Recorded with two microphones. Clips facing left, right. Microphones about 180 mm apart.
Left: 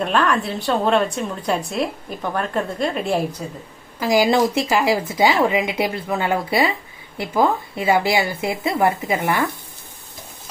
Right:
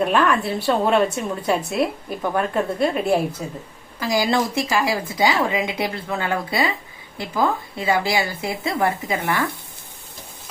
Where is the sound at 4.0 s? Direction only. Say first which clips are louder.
Left 4 dB; 20° left (ahead or behind).